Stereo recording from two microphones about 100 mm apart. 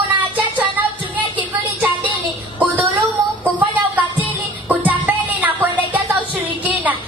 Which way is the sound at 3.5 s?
15° right (ahead or behind).